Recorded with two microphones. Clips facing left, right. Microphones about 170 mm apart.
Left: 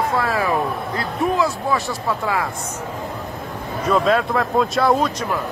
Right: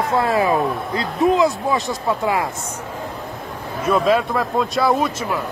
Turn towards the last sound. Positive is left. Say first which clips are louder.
# left 1 dB
turn(degrees=0)  # may be behind; listen again after turning